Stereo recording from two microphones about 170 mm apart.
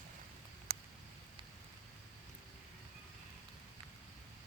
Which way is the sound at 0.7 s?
55° right (ahead or behind).